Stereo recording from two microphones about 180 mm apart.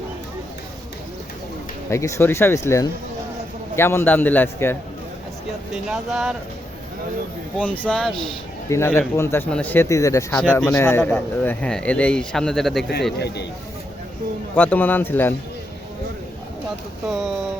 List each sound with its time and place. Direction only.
1.9 s speech: 15° left (ahead or behind)
5.7 s speech: centre (ahead or behind)
7.6 s speech: 5° left (ahead or behind)
8.7 s speech: 15° left (ahead or behind)
13.1 s speech: 65° left (ahead or behind)
14.5 s speech: 10° left (ahead or behind)
17.1 s speech: centre (ahead or behind)